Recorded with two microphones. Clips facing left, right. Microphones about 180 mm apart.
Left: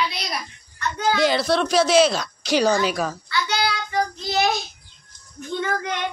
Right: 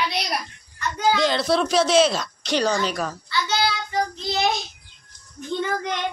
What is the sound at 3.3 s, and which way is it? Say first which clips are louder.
Child singing: right 3 dB; 25° right (ahead or behind).